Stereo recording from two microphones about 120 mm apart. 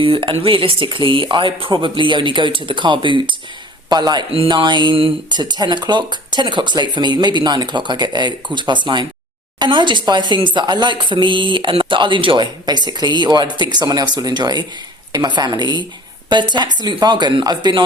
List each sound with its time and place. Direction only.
0.0 s speech: 45° right (ahead or behind)
4.3 s speech: 45° right (ahead or behind)